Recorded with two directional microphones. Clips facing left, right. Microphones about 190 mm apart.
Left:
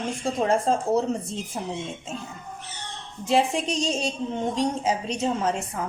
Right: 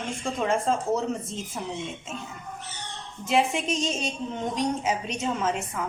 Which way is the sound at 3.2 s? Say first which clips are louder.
Left 2 dB; 35° left (ahead or behind).